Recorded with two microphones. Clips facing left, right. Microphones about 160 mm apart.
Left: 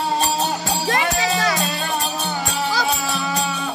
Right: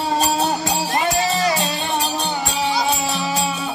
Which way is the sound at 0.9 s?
90° left.